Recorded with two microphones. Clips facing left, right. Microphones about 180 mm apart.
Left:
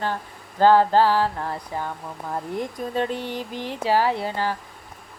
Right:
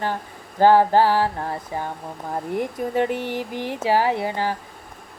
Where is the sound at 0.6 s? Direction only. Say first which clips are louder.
Right 1 dB; 15° right (ahead or behind).